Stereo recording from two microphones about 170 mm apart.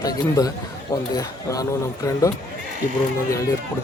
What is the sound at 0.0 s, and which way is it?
A man's voice, 20° left (ahead or behind).